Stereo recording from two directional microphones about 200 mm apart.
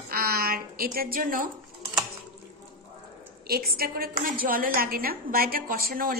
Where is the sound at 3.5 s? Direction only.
50° right (ahead or behind).